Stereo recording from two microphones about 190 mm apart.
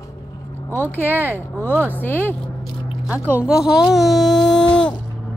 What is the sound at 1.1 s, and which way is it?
Speech, 10° right (ahead or behind).